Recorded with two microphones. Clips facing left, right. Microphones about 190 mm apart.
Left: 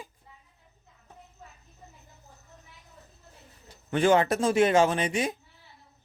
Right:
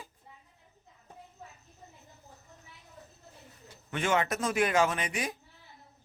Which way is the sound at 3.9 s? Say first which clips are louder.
Left 7 dB; 35° left (ahead or behind).